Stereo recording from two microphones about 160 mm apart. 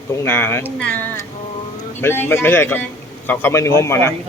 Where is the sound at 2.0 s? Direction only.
15° left (ahead or behind).